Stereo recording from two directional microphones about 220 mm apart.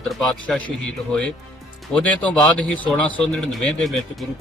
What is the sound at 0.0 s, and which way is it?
A man's voice, centre (ahead or behind).